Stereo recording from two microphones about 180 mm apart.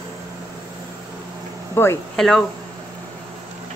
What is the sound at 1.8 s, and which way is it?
Speech, 15° left (ahead or behind).